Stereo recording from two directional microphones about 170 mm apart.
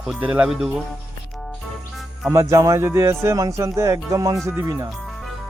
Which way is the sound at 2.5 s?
20° right (ahead or behind).